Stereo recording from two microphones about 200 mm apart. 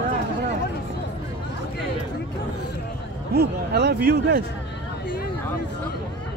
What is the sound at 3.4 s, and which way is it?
Speech, 55° right (ahead or behind).